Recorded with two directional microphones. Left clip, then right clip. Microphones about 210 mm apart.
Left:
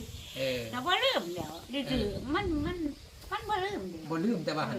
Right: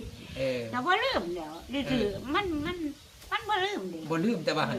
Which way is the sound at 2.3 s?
10° left (ahead or behind).